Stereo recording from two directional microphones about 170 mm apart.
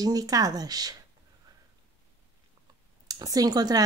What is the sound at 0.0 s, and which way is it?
Speech, 20° right (ahead or behind).